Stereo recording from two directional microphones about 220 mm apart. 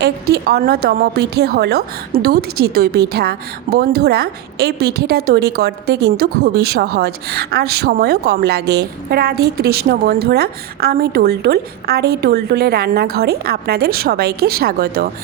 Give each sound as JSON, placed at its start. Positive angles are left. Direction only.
{"t": 0.0, "sound": "a woman's voice", "side_deg": -45}